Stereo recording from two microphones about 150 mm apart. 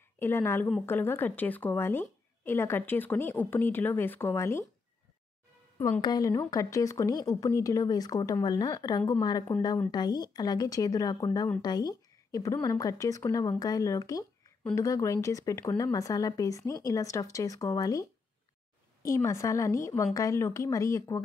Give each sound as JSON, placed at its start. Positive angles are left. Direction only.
{"t": 0.2, "sound": "a woman's voice", "side_deg": 15}
{"t": 5.8, "sound": "a woman's voice", "side_deg": 25}
{"t": 19.0, "sound": "a woman's voice", "side_deg": 20}